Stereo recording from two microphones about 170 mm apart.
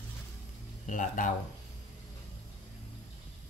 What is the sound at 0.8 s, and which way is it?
Speech, 50° left (ahead or behind).